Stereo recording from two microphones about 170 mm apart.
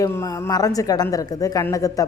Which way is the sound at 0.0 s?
20° left (ahead or behind).